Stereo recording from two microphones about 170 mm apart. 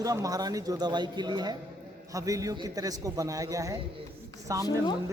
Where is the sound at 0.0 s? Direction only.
20° right (ahead or behind).